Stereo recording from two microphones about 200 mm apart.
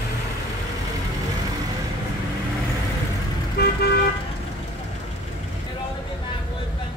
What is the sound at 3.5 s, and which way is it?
Car, 50° left (ahead or behind).